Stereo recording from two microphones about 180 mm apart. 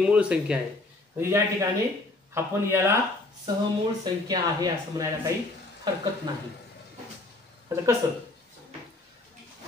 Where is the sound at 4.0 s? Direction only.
20° right (ahead or behind).